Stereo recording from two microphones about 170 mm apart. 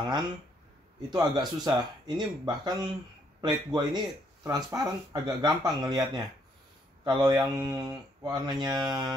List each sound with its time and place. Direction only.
1.1 s speech: 25° right (ahead or behind)